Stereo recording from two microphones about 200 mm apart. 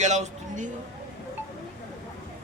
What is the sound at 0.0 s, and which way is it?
Speech, 35° right (ahead or behind).